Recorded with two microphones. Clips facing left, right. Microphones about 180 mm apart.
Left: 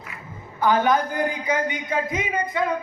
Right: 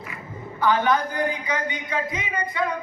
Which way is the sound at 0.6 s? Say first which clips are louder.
Left 1 dB; 45° left (ahead or behind).